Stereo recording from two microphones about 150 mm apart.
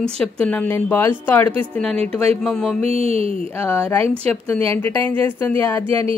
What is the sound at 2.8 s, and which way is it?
Speech, 40° right (ahead or behind).